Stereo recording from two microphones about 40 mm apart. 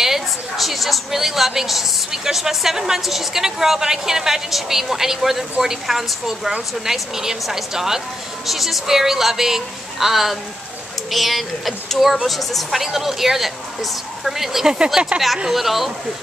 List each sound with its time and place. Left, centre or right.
0.0 s a woman's voice: centre
15.0 s speech: right
15.5 s speech: centre